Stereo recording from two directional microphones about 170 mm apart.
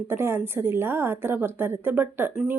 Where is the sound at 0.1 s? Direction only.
15° right (ahead or behind).